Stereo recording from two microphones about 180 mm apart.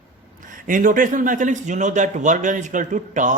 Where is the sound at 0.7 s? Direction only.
50° right (ahead or behind).